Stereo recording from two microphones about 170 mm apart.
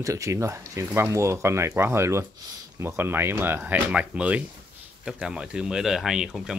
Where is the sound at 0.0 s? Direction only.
20° right (ahead or behind).